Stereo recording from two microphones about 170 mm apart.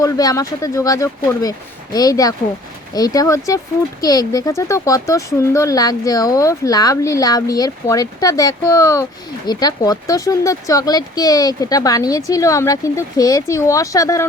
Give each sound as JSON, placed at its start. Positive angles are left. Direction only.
{"t": 0.0, "sound": "speech", "side_deg": 20}